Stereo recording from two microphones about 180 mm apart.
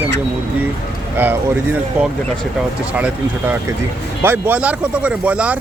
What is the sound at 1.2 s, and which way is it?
Speech, 10° right (ahead or behind).